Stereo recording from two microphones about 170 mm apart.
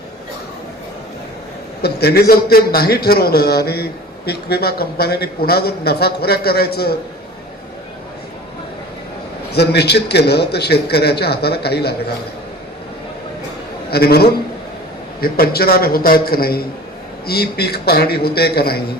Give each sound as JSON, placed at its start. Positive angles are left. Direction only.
{"t": 1.8, "sound": "a man's voice", "side_deg": 70}
{"t": 9.6, "sound": "a man's voice", "side_deg": 75}
{"t": 13.9, "sound": "a man's voice", "side_deg": 65}